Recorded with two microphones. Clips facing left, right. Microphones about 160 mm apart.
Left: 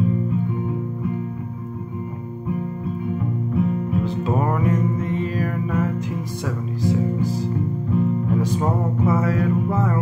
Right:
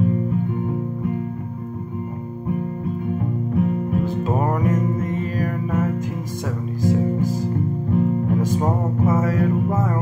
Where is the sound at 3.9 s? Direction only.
45° right (ahead or behind).